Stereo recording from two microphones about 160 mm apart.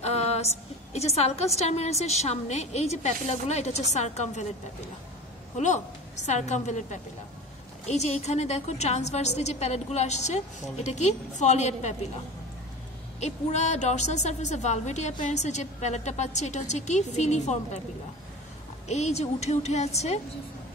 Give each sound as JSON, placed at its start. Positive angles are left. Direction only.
{"t": 0.0, "sound": "a sound", "side_deg": 40}
{"t": 0.9, "sound": "a woman's voice", "side_deg": 40}
{"t": 5.6, "sound": "a woman's voice", "side_deg": 50}
{"t": 13.2, "sound": "a woman's voice", "side_deg": 45}
{"t": 18.9, "sound": "a woman's voice", "side_deg": 45}